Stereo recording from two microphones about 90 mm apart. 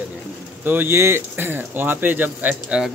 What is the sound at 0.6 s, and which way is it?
Speech, 20° right (ahead or behind).